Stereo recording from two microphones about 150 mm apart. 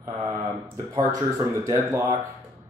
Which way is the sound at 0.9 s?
20° right (ahead or behind).